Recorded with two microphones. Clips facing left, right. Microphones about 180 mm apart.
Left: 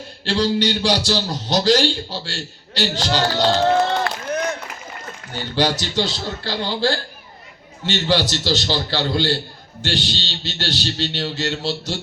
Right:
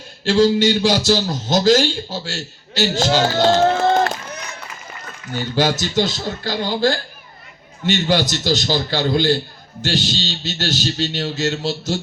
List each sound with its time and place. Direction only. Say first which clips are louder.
0.3 s a man's voice: right 5 dB; 45° right (ahead or behind)
5.3 s a man's voice: right 2 dB; 45° right (ahead or behind)
8.1 s a man's voice: left 1 dB; 45° right (ahead or behind)